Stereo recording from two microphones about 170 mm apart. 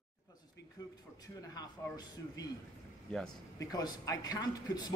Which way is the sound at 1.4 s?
20° left (ahead or behind).